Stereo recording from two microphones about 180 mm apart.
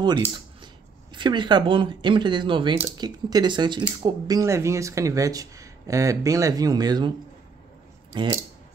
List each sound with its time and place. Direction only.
1.1 s speech: 25° right (ahead or behind)
8.1 s speech: 25° right (ahead or behind)